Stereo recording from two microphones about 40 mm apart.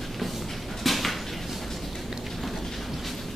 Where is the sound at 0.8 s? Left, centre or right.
Centre.